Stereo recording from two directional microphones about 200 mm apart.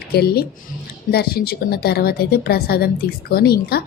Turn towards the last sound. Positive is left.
turn(degrees=50)  # may be behind; listen again after turning